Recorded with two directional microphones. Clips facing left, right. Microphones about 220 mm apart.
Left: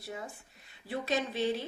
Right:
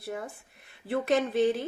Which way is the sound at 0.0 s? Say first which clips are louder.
Right 5 dB; 60° right (ahead or behind).